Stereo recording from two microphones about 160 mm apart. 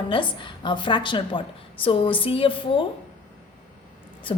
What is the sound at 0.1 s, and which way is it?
A woman's voice, 30° left (ahead or behind).